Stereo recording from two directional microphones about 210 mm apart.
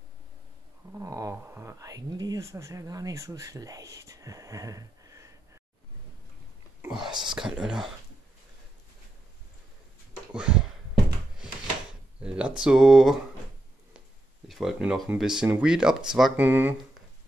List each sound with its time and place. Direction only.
0.9 s a sound: 15° right (ahead or behind)
7.1 s whispering: 20° right (ahead or behind)
7.3 s speech: 5° right (ahead or behind)
10.3 s a sound: 5° right (ahead or behind)
12.2 s speech: 5° right (ahead or behind)
14.5 s speech: centre (ahead or behind)